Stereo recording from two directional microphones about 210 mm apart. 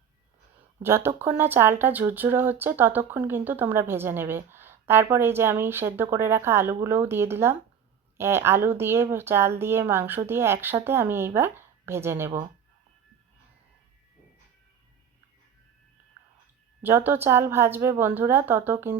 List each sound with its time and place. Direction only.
0.8 s speech: 10° right (ahead or behind)
16.8 s speech: 10° right (ahead or behind)